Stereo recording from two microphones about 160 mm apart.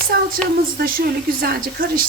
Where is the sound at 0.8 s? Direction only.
65° right (ahead or behind).